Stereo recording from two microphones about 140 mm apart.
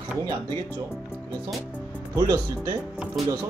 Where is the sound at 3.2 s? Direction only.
Centre (ahead or behind).